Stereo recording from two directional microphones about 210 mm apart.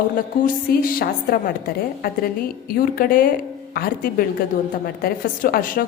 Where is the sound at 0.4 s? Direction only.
40° left (ahead or behind).